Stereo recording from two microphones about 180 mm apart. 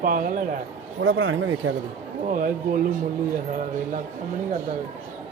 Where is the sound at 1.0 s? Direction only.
90° right.